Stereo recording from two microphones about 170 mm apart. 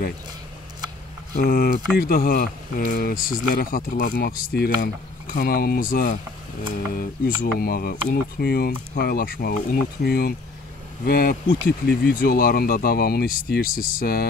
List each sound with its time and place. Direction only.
1.3 s speech: 60° left (ahead or behind)